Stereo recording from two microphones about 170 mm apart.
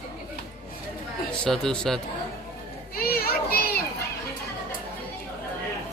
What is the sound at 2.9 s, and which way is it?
Children playing, 60° left (ahead or behind).